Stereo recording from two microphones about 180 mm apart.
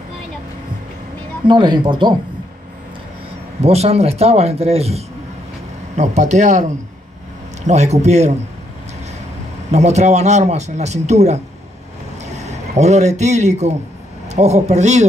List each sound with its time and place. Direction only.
1.5 s speech: 25° right (ahead or behind)
3.6 s speech: 35° right (ahead or behind)
9.7 s speech: 40° right (ahead or behind)